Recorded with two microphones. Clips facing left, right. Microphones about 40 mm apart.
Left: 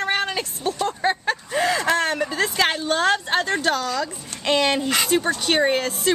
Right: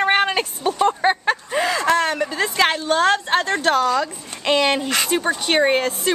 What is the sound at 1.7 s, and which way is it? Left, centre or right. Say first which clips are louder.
Speech: right 3 dB; centre.